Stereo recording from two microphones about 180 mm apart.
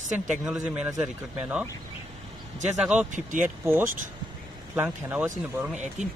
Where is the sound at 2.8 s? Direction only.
5° right (ahead or behind).